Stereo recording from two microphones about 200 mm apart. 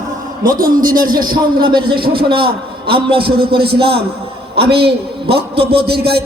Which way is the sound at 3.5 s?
50° right (ahead or behind).